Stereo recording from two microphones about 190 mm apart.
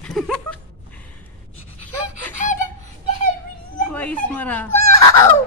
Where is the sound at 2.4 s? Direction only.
40° left (ahead or behind).